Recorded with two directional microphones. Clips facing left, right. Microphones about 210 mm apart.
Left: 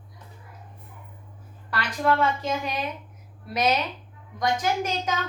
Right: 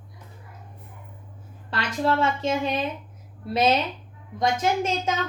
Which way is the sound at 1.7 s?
25° right (ahead or behind).